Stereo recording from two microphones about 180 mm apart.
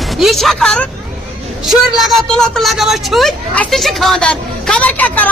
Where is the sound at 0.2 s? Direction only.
Centre (ahead or behind).